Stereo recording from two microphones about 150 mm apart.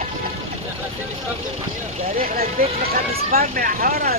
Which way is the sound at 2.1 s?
75° right (ahead or behind).